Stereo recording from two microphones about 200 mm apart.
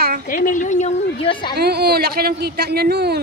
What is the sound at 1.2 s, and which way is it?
Speech, 25° left (ahead or behind).